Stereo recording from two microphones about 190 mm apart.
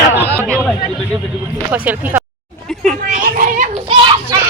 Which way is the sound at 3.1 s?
40° right (ahead or behind).